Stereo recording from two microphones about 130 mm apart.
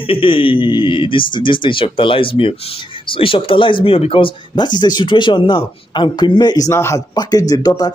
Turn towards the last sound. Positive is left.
turn(degrees=30)  # may be behind; listen again after turning